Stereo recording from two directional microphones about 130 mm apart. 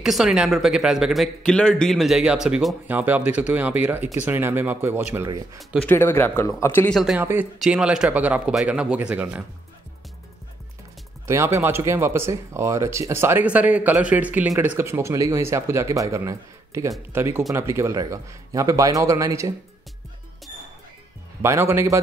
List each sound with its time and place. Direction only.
0.0 s speech: 5° right (ahead or behind); by 5.6 s 20° right (ahead or behind)
5.9 s a man's voice: 20° left (ahead or behind)
6.9 s speech: centre (ahead or behind)
7.2 s speech: 15° right (ahead or behind)
11.2 s speech: 20° right (ahead or behind)
21.4 s speech: 20° right (ahead or behind)